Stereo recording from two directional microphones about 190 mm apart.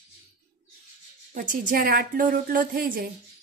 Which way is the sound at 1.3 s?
45° right (ahead or behind).